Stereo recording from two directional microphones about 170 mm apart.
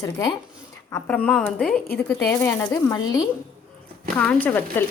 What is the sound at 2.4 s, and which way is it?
Speech, 20° left (ahead or behind).